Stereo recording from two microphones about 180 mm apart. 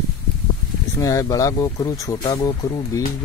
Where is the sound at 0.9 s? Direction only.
20° left (ahead or behind).